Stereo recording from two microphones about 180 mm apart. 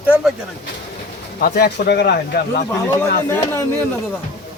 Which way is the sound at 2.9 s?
15° left (ahead or behind).